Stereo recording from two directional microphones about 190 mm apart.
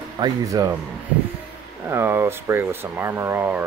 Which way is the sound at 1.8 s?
10° right (ahead or behind).